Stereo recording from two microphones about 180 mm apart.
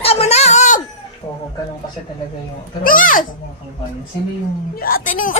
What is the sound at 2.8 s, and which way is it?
Speech, 50° left (ahead or behind).